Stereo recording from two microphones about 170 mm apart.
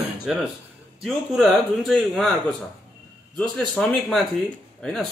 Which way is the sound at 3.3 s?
5° left (ahead or behind).